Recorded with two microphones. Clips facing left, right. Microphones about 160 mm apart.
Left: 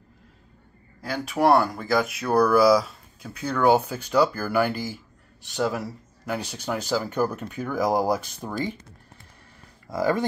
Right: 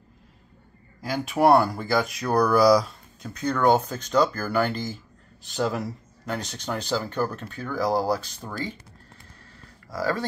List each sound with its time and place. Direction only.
1.0 s speech: centre (ahead or behind); by 8.6 s 15° left (ahead or behind)
9.8 s speech: 20° left (ahead or behind)